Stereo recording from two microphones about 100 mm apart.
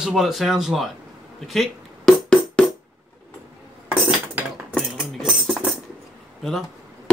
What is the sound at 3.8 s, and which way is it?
Cutlery, 20° right (ahead or behind).